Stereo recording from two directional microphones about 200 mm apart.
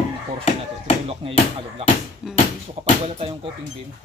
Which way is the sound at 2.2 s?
Centre (ahead or behind).